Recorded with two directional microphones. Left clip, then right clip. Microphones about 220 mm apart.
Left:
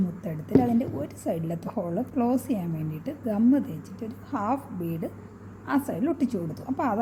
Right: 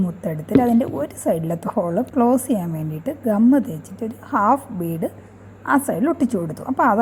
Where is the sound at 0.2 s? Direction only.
15° right (ahead or behind).